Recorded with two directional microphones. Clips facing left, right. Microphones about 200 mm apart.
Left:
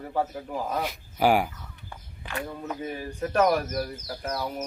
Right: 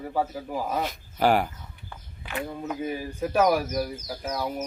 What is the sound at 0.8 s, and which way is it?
Speech, 10° left (ahead or behind).